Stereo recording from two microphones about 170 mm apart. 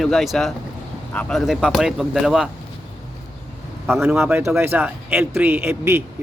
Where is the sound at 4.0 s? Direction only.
10° right (ahead or behind).